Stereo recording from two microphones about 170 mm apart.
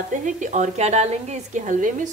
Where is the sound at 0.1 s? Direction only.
45° right (ahead or behind).